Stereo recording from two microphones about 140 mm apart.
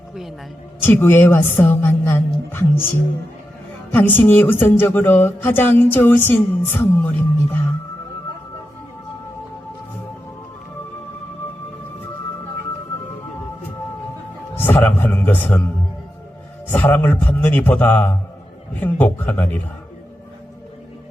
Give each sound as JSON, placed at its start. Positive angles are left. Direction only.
{"t": 0.1, "sound": "a woman's voice", "side_deg": 0}
{"t": 0.8, "sound": "speech", "side_deg": 15}
{"t": 3.9, "sound": "speech", "side_deg": 10}
{"t": 14.6, "sound": "music", "side_deg": 15}
{"t": 16.6, "sound": "speech", "side_deg": 15}